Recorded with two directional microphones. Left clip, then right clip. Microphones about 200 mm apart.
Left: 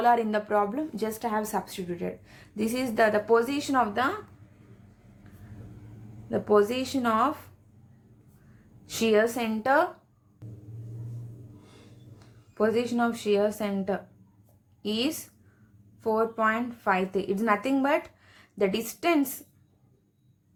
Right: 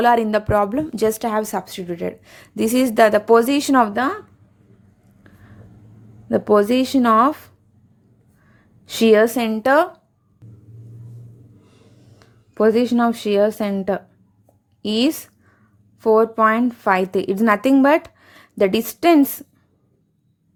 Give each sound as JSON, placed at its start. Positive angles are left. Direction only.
{"t": 0.0, "sound": "speech", "side_deg": -40}
{"t": 6.2, "sound": "speech", "side_deg": -45}
{"t": 8.8, "sound": "speech", "side_deg": -40}
{"t": 10.4, "sound": "vehicle", "side_deg": 0}
{"t": 12.5, "sound": "a woman's voice", "side_deg": -45}